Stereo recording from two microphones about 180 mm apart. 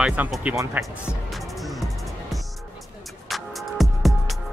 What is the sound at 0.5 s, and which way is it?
Speech, 15° right (ahead or behind).